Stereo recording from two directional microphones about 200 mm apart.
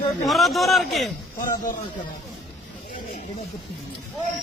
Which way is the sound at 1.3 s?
40° left (ahead or behind).